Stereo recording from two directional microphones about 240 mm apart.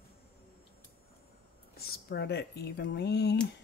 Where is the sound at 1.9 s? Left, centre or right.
Left.